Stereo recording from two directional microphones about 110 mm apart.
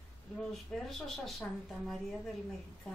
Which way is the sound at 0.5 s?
5° left (ahead or behind).